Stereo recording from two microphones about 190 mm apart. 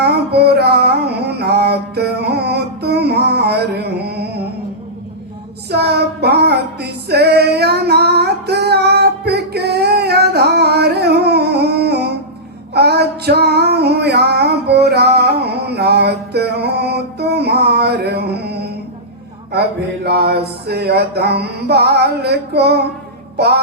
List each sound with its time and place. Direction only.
0.0 s music: 60° right (ahead or behind)
5.7 s child singing: 60° right (ahead or behind)
12.7 s female singing: 60° right (ahead or behind)
19.5 s a sound: 60° right (ahead or behind)
20.1 s music: 55° right (ahead or behind)